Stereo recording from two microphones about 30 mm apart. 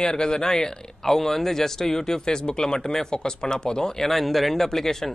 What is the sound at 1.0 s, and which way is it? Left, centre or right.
Speech, centre.